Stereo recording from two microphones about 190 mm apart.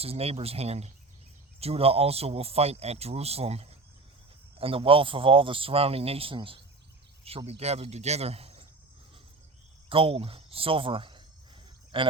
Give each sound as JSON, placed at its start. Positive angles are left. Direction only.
{"t": 0.0, "sound": "speech", "side_deg": -30}
{"t": 9.9, "sound": "speech", "side_deg": -30}